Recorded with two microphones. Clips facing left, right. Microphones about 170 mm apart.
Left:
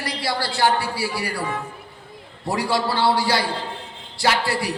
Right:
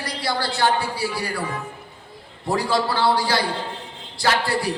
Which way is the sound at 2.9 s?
25° left (ahead or behind).